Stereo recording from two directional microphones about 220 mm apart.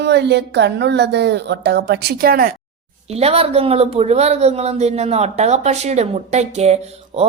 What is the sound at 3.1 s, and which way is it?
A woman's voice, 30° right (ahead or behind).